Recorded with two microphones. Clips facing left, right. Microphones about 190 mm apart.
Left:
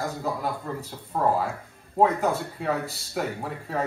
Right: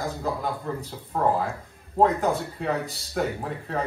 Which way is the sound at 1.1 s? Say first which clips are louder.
Even; centre (ahead or behind).